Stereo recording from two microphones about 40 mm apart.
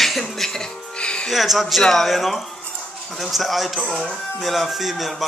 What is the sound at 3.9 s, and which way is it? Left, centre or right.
Speech, centre.